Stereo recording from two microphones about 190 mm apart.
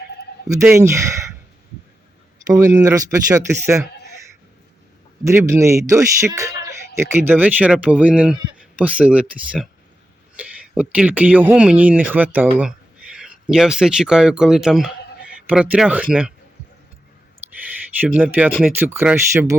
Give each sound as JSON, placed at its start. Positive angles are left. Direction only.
{"t": 0.7, "sound": "speech", "side_deg": -15}
{"t": 2.5, "sound": "speech", "side_deg": -15}
{"t": 5.2, "sound": "speech", "side_deg": -10}
{"t": 17.4, "sound": "a sound", "side_deg": -10}
{"t": 18.0, "sound": "speech", "side_deg": -10}